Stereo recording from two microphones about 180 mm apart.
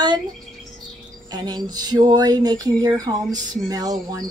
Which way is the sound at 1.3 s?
20° right (ahead or behind).